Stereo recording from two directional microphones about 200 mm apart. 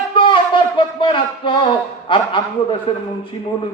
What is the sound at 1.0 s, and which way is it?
A man's voice, 25° left (ahead or behind).